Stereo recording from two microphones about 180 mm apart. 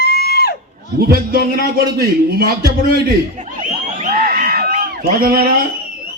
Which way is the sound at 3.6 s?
50° right (ahead or behind).